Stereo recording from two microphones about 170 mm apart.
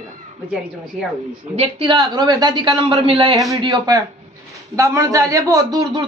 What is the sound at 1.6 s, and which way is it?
A woman's voice, 30° right (ahead or behind).